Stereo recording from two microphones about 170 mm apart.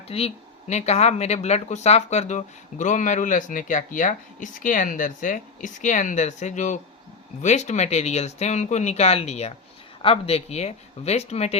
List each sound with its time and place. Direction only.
0.1 s speech: 35° left (ahead or behind)